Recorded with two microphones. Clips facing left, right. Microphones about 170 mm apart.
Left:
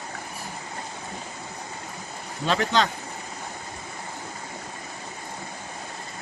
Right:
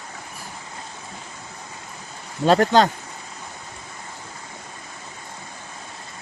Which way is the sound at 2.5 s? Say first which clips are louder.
Right 7 dB; 45° right (ahead or behind).